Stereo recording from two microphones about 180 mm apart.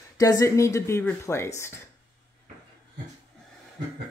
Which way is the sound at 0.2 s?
20° left (ahead or behind).